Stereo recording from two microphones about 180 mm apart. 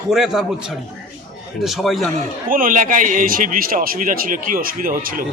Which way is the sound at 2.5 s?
50° right (ahead or behind).